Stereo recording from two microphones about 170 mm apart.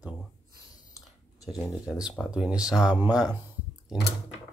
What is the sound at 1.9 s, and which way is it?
Speech, 5° right (ahead or behind).